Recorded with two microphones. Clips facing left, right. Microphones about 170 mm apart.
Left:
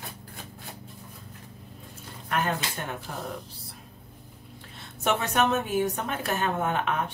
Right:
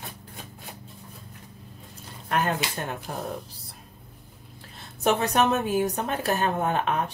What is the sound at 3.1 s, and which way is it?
Speech, 40° right (ahead or behind).